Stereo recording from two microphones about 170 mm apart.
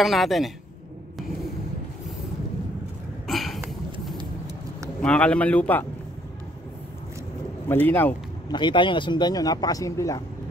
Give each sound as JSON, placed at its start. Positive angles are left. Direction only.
{"t": 0.0, "sound": "a woman's voice", "side_deg": 0}
{"t": 3.3, "sound": "a sound", "side_deg": 0}
{"t": 5.0, "sound": "a man's voice", "side_deg": 5}
{"t": 7.6, "sound": "a man's voice", "side_deg": 10}
{"t": 8.5, "sound": "speech", "side_deg": 25}